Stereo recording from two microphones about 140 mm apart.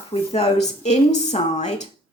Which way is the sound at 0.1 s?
45° left (ahead or behind).